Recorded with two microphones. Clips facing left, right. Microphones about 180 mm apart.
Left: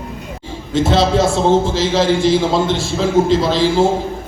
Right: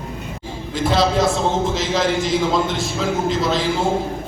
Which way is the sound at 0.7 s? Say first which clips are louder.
Left 4 dB; 25° left (ahead or behind).